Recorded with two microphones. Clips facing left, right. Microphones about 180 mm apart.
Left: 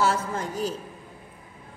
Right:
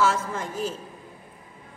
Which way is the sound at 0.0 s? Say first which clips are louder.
Right 1 dB; 35° left (ahead or behind).